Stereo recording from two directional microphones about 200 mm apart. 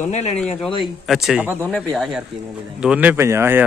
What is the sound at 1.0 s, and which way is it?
Speech, centre (ahead or behind).